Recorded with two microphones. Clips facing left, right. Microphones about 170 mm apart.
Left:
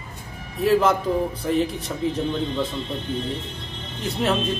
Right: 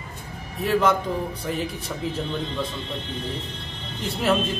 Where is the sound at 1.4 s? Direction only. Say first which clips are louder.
Left 8 dB; centre (ahead or behind).